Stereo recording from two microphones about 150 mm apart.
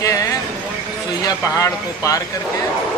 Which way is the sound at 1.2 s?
25° left (ahead or behind).